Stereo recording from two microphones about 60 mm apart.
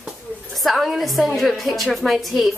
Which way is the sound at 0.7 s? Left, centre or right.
Centre.